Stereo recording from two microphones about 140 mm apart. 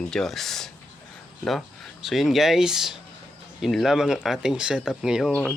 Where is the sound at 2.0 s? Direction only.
Centre (ahead or behind).